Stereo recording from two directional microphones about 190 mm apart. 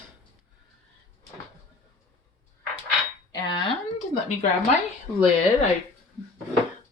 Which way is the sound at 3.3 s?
25° left (ahead or behind).